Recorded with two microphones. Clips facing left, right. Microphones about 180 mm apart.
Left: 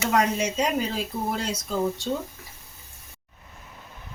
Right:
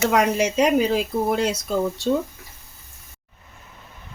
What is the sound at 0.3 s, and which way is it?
Speech, 70° right (ahead or behind).